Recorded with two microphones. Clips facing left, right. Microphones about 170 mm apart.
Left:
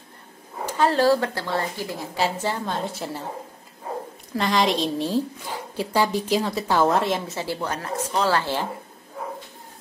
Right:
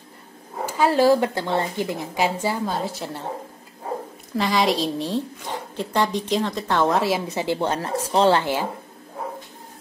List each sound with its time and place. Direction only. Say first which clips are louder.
0.7 s a woman's voice: right 2 dB; 10° right (ahead or behind)
4.3 s a woman's voice: right 1 dB; centre (ahead or behind)
7.2 s speech: right 5 dB; 20° right (ahead or behind)